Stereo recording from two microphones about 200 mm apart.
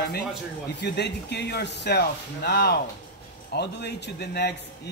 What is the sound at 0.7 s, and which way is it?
A man's voice, 55° left (ahead or behind).